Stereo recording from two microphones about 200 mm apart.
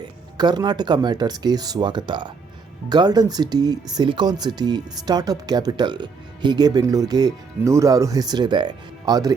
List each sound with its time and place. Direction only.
0.0 s speech: 20° right (ahead or behind)